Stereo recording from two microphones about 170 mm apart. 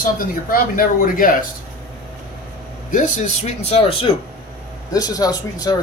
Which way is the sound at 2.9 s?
45° left (ahead or behind).